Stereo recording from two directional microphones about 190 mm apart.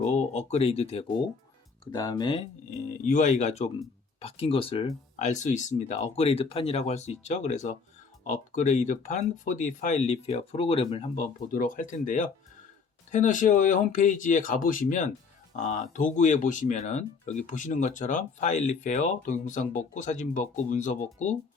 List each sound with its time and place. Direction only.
0.0 s speech: 35° left (ahead or behind)
1.8 s speech: 20° left (ahead or behind)
2.6 s speech: 40° left (ahead or behind)
5.2 s speech: 40° left (ahead or behind)